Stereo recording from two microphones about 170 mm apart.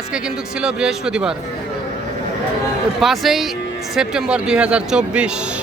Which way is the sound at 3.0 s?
Centre (ahead or behind).